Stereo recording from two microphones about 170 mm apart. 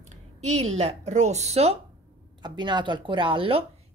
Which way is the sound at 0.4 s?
40° right (ahead or behind).